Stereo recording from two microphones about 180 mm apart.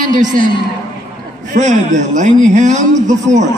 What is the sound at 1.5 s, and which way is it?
A man's voice, 40° right (ahead or behind).